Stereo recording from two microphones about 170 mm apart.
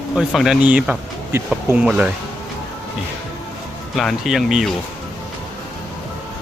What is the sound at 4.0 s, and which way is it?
Speech, centre (ahead or behind).